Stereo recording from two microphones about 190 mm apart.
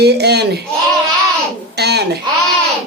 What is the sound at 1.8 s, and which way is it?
Speech, 60° right (ahead or behind).